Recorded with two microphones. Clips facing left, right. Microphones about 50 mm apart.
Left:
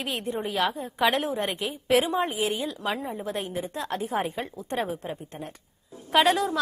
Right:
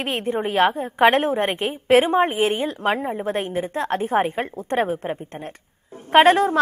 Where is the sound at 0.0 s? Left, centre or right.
Right.